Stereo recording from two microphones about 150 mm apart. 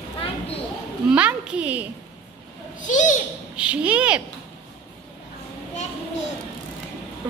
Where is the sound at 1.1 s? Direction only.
10° right (ahead or behind).